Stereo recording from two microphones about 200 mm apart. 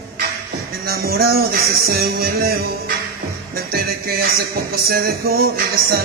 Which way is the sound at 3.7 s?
50° right (ahead or behind).